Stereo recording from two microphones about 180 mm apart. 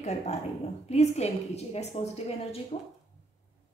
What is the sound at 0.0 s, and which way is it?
A woman's voice, 35° left (ahead or behind).